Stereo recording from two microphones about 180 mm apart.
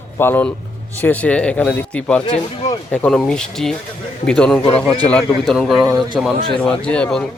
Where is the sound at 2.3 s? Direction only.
35° left (ahead or behind).